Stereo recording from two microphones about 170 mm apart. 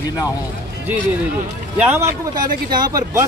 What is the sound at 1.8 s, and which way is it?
Speech, 10° right (ahead or behind).